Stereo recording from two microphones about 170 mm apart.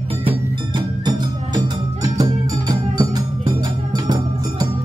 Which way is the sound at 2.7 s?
25° right (ahead or behind).